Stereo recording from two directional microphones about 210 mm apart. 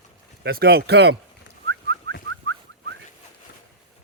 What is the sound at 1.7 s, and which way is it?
Whistling, 55° right (ahead or behind).